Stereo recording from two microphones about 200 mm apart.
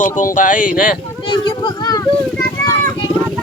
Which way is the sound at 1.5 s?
20° left (ahead or behind).